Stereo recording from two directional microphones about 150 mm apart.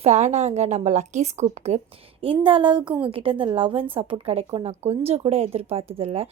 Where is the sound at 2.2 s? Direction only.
35° right (ahead or behind).